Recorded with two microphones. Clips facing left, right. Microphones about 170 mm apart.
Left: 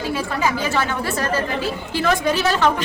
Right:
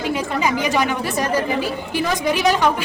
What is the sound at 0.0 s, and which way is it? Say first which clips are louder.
Speech: right 1 dB; 20° right (ahead or behind).